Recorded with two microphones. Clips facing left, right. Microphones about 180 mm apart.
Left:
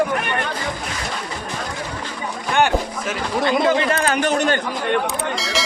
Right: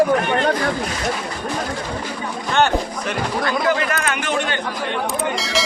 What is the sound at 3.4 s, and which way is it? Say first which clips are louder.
Speech: left 4 dB; 20° left (ahead or behind).